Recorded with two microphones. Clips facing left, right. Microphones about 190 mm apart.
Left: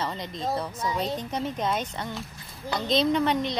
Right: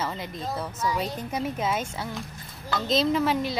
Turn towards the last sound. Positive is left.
turn(degrees=-5)  # may be behind; listen again after turning